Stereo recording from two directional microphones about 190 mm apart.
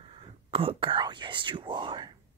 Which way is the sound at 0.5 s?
30° right (ahead or behind).